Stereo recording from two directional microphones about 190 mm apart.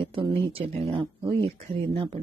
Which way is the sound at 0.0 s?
30° right (ahead or behind).